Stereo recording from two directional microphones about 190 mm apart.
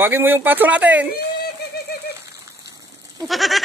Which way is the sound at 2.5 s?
20° right (ahead or behind).